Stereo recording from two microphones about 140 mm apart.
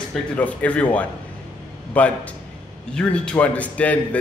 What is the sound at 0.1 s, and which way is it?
Speech, 10° left (ahead or behind).